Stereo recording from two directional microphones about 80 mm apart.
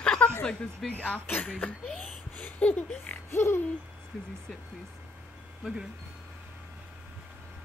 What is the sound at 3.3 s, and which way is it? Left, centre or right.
Hoot, left.